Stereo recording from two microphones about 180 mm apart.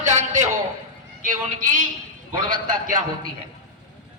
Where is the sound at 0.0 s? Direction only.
45° right (ahead or behind).